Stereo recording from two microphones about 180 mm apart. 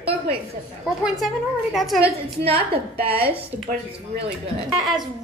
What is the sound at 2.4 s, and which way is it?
Speech, 30° right (ahead or behind).